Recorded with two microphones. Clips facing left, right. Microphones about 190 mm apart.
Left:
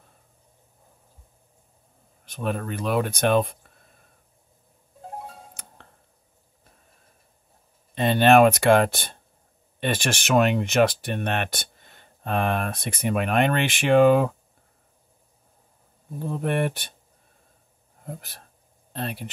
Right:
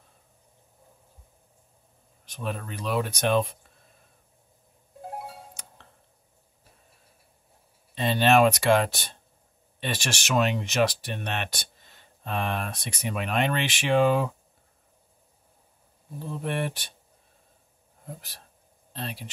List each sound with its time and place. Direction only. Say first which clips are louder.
2.2 s speech: left 5 dB; 55° left (ahead or behind)
5.5 s music: left 1 dB; 55° left (ahead or behind)
7.9 s speech: left 4 dB; 55° left (ahead or behind)
16.2 s speech: left 5 dB; 50° left (ahead or behind)
18.0 s speech: left 4 dB; 55° left (ahead or behind)